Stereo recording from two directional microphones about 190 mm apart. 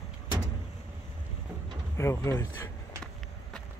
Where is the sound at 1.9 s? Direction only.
15° left (ahead or behind).